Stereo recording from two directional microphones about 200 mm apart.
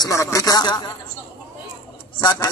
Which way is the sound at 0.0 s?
15° left (ahead or behind).